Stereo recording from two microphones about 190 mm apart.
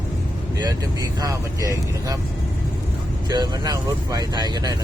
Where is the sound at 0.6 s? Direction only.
20° right (ahead or behind).